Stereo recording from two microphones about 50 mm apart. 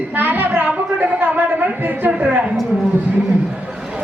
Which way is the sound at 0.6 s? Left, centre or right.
Right.